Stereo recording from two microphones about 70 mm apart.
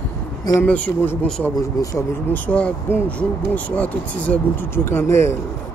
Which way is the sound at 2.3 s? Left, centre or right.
Left.